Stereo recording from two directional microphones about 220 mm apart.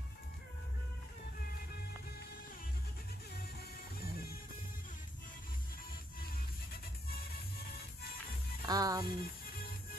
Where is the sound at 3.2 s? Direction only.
45° left (ahead or behind).